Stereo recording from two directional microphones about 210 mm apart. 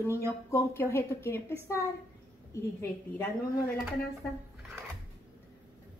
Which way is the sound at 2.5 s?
15° left (ahead or behind).